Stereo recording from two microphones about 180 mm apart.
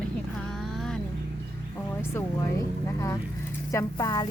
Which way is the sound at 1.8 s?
15° left (ahead or behind).